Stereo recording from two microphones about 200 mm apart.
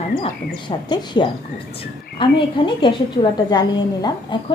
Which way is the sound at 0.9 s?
20° left (ahead or behind).